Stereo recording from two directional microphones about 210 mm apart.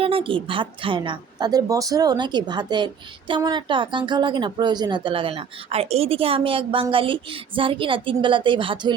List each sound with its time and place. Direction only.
0.0 s speech: 25° right (ahead or behind)